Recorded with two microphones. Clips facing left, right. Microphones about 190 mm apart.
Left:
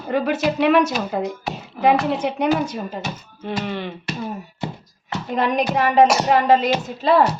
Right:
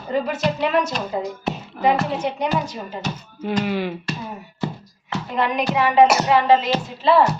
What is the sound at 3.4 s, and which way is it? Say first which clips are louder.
Speech: right 4 dB; 5° left (ahead or behind).